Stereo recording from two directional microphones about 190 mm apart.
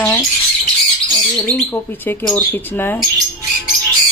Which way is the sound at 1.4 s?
10° left (ahead or behind).